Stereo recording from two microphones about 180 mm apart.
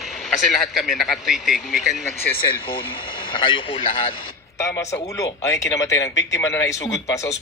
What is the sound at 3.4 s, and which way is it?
Speech, 30° left (ahead or behind).